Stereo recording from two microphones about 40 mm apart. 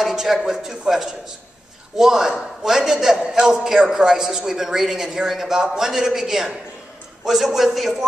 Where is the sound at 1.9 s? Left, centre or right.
Centre.